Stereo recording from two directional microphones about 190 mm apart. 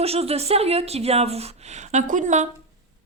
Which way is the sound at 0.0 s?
30° right (ahead or behind).